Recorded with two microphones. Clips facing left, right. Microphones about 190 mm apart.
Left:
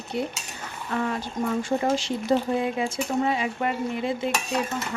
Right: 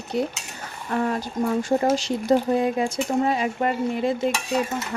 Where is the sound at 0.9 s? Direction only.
40° right (ahead or behind).